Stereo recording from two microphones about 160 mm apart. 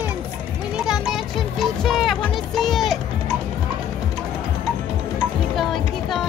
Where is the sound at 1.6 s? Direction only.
Centre (ahead or behind).